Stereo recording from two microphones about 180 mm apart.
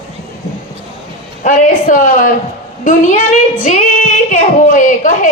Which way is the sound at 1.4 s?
45° left (ahead or behind).